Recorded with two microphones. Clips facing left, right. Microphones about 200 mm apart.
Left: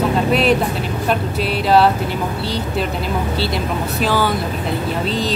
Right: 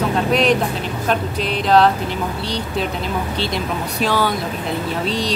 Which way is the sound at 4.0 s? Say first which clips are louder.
Left 1 dB; centre (ahead or behind).